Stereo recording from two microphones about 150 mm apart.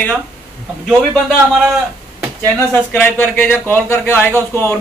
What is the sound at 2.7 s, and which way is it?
A man's voice, 15° left (ahead or behind).